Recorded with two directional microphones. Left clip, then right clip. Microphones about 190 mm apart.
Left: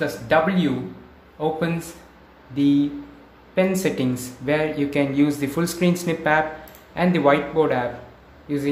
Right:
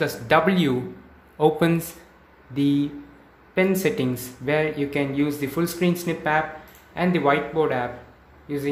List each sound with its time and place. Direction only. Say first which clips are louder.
0.0 s speech: even; 35° right (ahead or behind)
2.5 s speech: left 3 dB; 25° right (ahead or behind); by 8.6 s 5° right (ahead or behind)